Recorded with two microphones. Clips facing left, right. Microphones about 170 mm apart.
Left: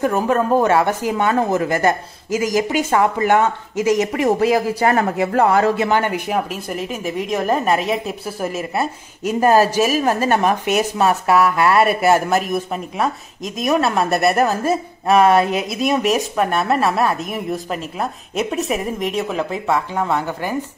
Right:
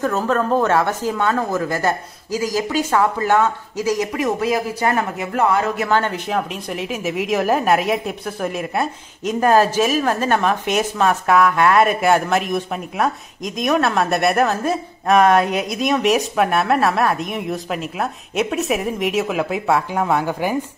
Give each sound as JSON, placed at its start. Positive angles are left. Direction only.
{"t": 0.0, "sound": "speech", "side_deg": 15}
{"t": 5.9, "sound": "a woman's voice", "side_deg": 15}